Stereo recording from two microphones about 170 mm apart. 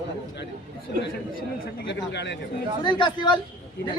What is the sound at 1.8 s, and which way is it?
Speech, 90° left.